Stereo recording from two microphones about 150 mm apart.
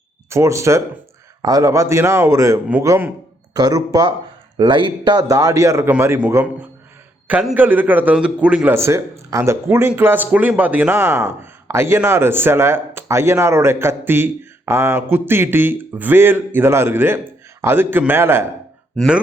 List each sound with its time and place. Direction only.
0.3 s a man's voice: 20° right (ahead or behind)